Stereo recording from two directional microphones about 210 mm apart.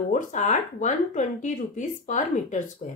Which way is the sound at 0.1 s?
35° left (ahead or behind).